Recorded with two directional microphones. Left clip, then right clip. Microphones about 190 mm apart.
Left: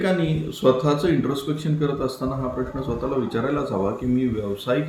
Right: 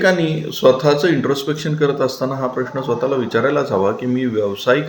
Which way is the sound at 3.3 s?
10° left (ahead or behind).